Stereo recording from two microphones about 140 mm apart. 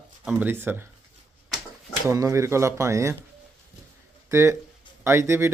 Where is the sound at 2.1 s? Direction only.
20° right (ahead or behind).